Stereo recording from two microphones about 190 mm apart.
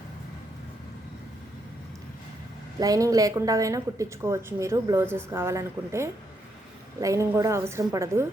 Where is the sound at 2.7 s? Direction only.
20° right (ahead or behind).